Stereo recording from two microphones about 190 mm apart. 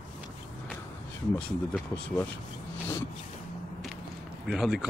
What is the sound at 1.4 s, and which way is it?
Speech, 5° left (ahead or behind).